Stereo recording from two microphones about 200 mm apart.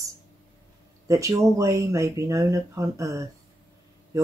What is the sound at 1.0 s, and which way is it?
Speech, 15° right (ahead or behind).